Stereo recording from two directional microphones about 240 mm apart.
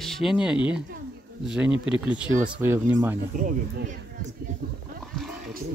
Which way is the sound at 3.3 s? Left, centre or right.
Right.